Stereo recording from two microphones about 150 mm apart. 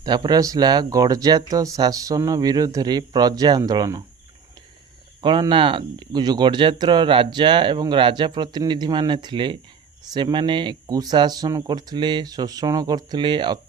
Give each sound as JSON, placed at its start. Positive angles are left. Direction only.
{"t": 0.0, "sound": "speech", "side_deg": -30}
{"t": 5.2, "sound": "speech", "side_deg": -30}